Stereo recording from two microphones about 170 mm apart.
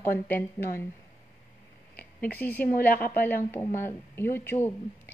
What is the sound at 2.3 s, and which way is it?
Speech, 10° left (ahead or behind).